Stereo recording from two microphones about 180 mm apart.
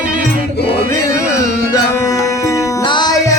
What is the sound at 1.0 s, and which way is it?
Music, 15° left (ahead or behind).